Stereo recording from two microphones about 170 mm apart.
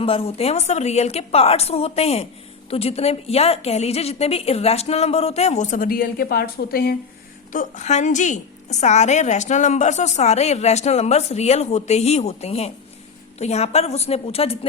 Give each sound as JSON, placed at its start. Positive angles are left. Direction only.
{"t": 0.0, "sound": "a woman's voice", "side_deg": 35}
{"t": 7.5, "sound": "a woman's voice", "side_deg": 45}